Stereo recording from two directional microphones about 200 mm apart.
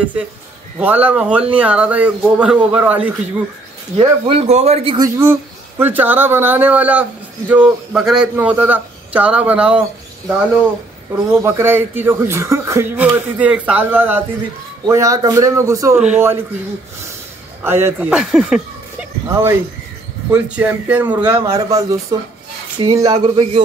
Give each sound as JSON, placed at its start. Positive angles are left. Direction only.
{"t": 0.7, "sound": "speech", "side_deg": -10}
{"t": 4.3, "sound": "speech", "side_deg": -30}
{"t": 17.6, "sound": "speech", "side_deg": -10}